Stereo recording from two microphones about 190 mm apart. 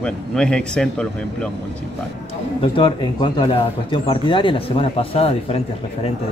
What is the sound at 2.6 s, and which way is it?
Speech, 25° left (ahead or behind).